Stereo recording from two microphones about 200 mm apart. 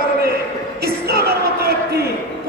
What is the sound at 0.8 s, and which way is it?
Music, 50° right (ahead or behind).